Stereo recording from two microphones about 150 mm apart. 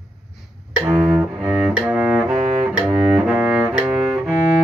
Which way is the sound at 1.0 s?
10° right (ahead or behind).